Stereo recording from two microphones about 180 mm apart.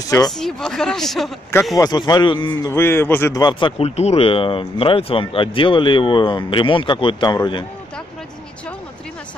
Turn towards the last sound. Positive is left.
turn(degrees=25)  # may be behind; listen again after turning